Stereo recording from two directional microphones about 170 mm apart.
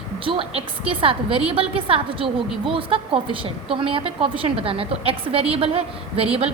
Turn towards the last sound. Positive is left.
turn(degrees=-35)  # may be behind; listen again after turning